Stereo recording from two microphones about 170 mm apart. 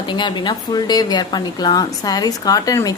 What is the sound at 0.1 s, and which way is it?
A woman's voice, 25° left (ahead or behind).